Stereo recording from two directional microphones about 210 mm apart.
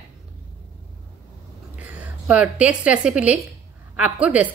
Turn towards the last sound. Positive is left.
turn(degrees=-5)  # may be behind; listen again after turning